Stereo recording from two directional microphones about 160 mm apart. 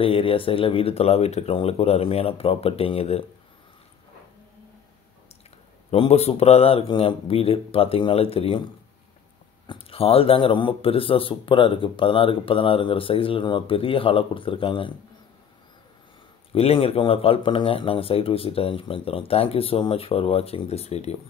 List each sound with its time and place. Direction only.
0.0 s speech: 35° left (ahead or behind)
5.9 s speech: 40° left (ahead or behind)
9.7 s speech: 35° left (ahead or behind)
16.5 s speech: 40° left (ahead or behind)